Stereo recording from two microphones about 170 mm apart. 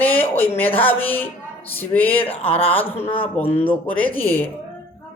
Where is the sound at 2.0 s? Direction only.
35° left (ahead or behind).